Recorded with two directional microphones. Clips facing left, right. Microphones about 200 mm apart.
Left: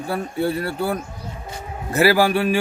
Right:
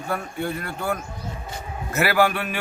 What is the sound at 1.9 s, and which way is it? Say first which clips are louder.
Speech: left 4 dB; 30° left (ahead or behind).